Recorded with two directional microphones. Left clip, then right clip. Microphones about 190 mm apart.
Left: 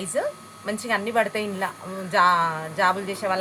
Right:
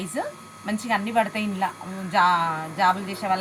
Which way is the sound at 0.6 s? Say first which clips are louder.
Even; 35° left (ahead or behind).